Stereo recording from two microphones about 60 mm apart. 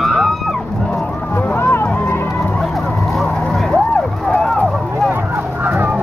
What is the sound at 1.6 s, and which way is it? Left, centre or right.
Music, left.